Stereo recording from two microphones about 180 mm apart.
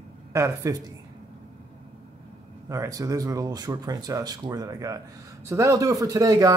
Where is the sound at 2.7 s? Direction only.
20° right (ahead or behind).